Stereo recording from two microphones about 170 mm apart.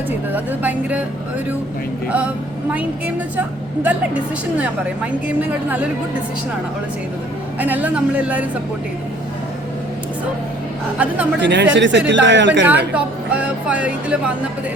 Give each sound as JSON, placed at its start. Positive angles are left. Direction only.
{"t": 0.3, "sound": "speech", "side_deg": -10}
{"t": 2.0, "sound": "speech", "side_deg": -5}
{"t": 3.8, "sound": "speech", "side_deg": -10}
{"t": 7.6, "sound": "speech", "side_deg": -10}
{"t": 10.9, "sound": "speech", "side_deg": -10}
{"t": 11.3, "sound": "speech", "side_deg": -90}
{"t": 12.6, "sound": "speech", "side_deg": -10}